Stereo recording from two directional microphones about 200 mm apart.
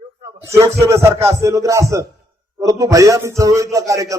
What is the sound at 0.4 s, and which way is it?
A man's voice, 15° right (ahead or behind).